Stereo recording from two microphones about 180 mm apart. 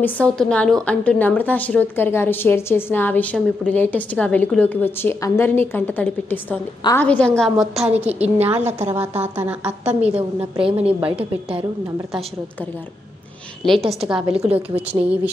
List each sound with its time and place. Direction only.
0.0 s a woman's voice: 5° left (ahead or behind)
10.1 s a woman's voice: 35° right (ahead or behind)
13.7 s a woman's voice: centre (ahead or behind)